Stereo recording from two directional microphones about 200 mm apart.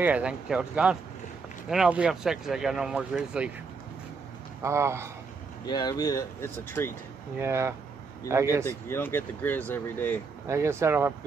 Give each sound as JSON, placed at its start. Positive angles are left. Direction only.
{"t": 0.0, "sound": "speech", "side_deg": -5}
{"t": 4.6, "sound": "speech", "side_deg": -15}
{"t": 5.7, "sound": "speech", "side_deg": 20}
{"t": 7.3, "sound": "speech", "side_deg": -15}
{"t": 8.6, "sound": "speech", "side_deg": 10}
{"t": 10.4, "sound": "speech", "side_deg": -15}